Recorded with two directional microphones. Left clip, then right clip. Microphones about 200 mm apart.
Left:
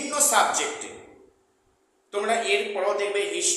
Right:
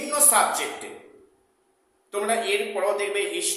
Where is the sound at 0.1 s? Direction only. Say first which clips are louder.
Even; 5° right (ahead or behind).